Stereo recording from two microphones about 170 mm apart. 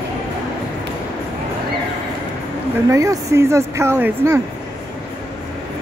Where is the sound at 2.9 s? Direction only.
20° right (ahead or behind).